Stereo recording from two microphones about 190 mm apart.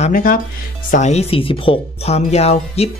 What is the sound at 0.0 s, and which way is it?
Speech, 45° left (ahead or behind).